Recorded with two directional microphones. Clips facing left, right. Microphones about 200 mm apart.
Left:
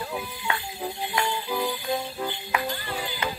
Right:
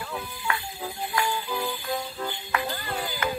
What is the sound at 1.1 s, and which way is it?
Jingle bell, 20° left (ahead or behind).